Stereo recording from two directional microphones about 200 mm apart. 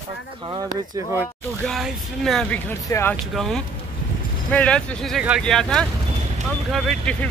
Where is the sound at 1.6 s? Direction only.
Centre (ahead or behind).